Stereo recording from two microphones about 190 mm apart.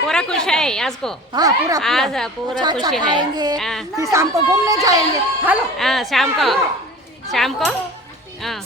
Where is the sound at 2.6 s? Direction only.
20° right (ahead or behind).